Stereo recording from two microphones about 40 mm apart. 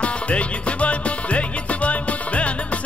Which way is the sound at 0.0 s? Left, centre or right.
Left.